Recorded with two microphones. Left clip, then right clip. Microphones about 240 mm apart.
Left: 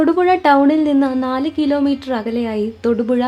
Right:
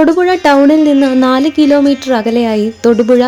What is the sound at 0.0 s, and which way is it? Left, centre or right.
A woman's voice, centre.